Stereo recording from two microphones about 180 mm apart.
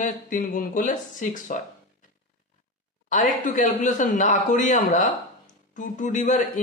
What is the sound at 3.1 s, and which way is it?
A man's voice, 45° left (ahead or behind).